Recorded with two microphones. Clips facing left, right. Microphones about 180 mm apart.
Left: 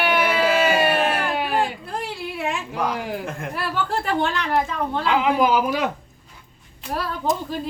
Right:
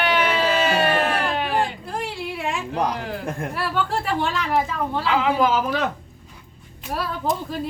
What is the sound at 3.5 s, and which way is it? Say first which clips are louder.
A woman's voice: even; centre (ahead or behind).